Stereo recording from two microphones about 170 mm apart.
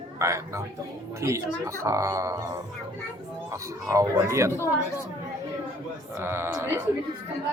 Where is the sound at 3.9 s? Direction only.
15° right (ahead or behind).